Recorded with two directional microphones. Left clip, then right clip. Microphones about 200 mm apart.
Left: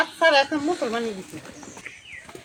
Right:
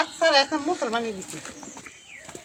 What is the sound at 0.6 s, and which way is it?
Speech, 50° left (ahead or behind).